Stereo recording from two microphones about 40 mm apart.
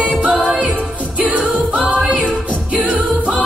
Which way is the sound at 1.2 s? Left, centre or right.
Right.